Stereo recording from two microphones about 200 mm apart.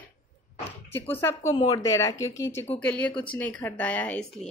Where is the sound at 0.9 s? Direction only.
10° left (ahead or behind).